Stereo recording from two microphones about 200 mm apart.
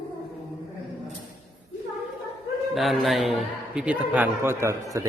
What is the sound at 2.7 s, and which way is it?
A man's voice, centre (ahead or behind).